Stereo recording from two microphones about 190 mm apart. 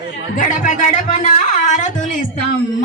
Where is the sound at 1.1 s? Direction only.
35° left (ahead or behind).